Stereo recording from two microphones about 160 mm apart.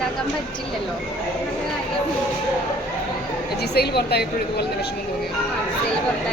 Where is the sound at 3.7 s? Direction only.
90° left.